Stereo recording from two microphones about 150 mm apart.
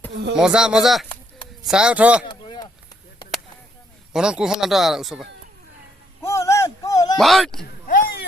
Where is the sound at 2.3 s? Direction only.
30° left (ahead or behind).